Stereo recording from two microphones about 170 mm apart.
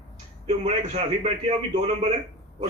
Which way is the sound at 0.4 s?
40° right (ahead or behind).